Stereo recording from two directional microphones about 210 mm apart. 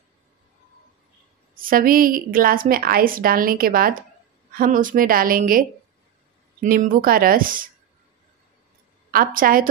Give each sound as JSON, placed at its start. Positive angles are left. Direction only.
{"t": 1.6, "sound": "a woman's voice", "side_deg": -40}
{"t": 9.1, "sound": "a woman's voice", "side_deg": -45}